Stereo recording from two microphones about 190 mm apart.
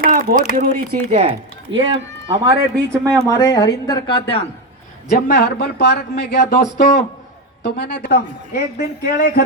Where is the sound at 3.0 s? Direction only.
10° left (ahead or behind); by 4.4 s 25° left (ahead or behind).